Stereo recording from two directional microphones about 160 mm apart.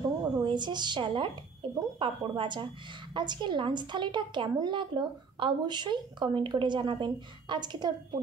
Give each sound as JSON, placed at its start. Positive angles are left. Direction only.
{"t": 0.4, "sound": "a woman's voice", "side_deg": -30}